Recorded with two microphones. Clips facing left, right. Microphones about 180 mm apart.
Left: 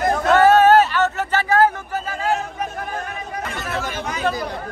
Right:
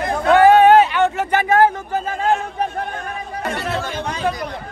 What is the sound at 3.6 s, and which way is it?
Speech, 30° right (ahead or behind).